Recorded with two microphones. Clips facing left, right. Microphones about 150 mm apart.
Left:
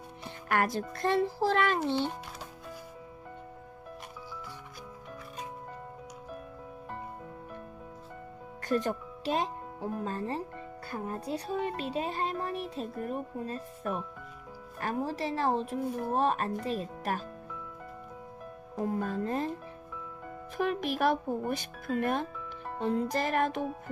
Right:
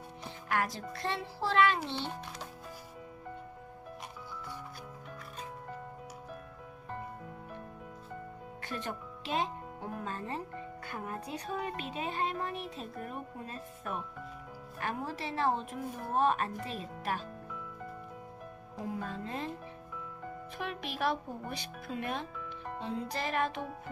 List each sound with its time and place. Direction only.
0.4 s speech: 55° left (ahead or behind)
8.6 s speech: 40° left (ahead or behind)
18.8 s speech: 50° left (ahead or behind)
20.6 s speech: 50° left (ahead or behind)